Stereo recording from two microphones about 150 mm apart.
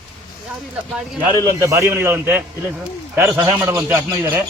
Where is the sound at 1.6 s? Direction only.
20° right (ahead or behind).